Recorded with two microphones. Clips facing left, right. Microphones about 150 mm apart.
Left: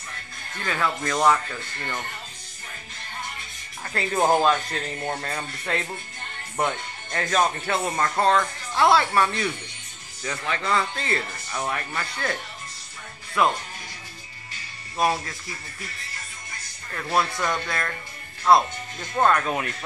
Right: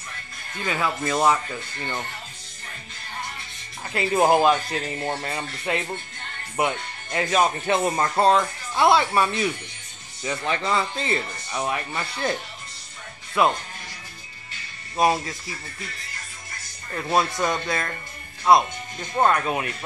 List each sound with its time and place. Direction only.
0.6 s speech: 15° right (ahead or behind)
3.8 s speech: 10° right (ahead or behind)
12.0 s speech: 25° right (ahead or behind)
13.4 s speech: 15° right (ahead or behind)
15.0 s speech: 15° right (ahead or behind)
16.9 s speech: 20° right (ahead or behind)